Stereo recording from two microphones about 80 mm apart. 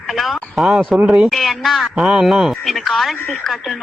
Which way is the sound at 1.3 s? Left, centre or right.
Centre.